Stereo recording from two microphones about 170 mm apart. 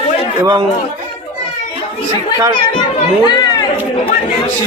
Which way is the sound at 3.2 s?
25° left (ahead or behind).